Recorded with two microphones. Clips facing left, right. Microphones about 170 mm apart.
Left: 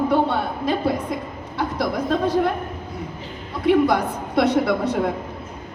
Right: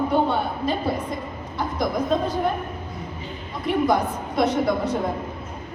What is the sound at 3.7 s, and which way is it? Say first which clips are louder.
A woman's voice: left 4 dB; 75° left (ahead or behind).